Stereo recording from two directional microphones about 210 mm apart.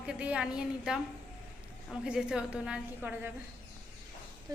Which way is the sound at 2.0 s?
5° right (ahead or behind).